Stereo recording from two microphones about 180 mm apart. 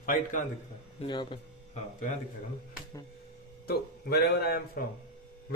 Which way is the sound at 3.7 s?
60° left (ahead or behind).